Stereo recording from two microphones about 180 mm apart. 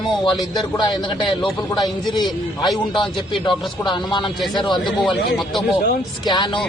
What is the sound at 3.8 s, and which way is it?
Speech, 25° left (ahead or behind).